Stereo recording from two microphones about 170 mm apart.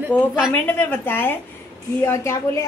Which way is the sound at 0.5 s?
15° left (ahead or behind).